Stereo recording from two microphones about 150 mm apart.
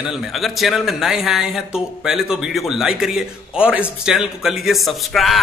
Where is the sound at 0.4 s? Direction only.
Centre (ahead or behind).